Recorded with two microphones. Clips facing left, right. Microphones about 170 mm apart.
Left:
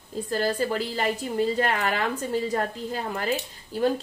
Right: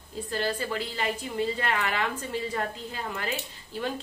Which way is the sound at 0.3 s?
40° left (ahead or behind).